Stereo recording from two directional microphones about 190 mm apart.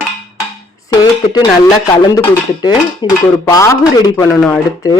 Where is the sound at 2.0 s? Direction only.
20° left (ahead or behind).